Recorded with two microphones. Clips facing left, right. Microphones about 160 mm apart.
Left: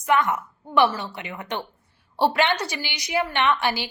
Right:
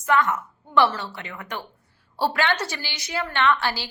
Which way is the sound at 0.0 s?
15° left (ahead or behind).